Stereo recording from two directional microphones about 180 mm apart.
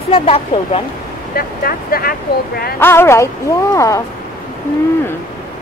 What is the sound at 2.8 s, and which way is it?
Speech, 15° left (ahead or behind).